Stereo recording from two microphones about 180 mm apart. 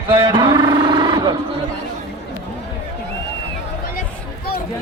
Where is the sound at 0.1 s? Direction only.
25° right (ahead or behind).